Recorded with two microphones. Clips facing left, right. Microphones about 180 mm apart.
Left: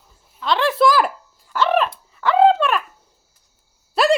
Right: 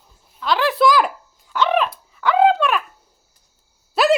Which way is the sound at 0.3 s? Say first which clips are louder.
Even; centre (ahead or behind).